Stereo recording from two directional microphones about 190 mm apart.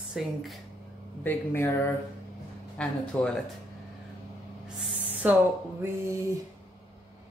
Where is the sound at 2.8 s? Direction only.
5° left (ahead or behind).